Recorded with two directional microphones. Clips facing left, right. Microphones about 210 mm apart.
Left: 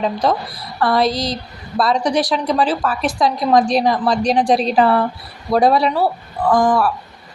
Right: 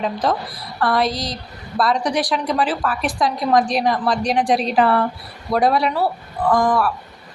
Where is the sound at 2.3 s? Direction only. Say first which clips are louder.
Left 3 dB; 30° left (ahead or behind).